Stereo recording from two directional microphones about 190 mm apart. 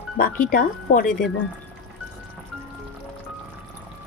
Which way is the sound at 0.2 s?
50° left (ahead or behind).